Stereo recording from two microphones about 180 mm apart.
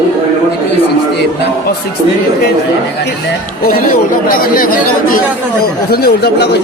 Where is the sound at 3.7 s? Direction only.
55° left (ahead or behind).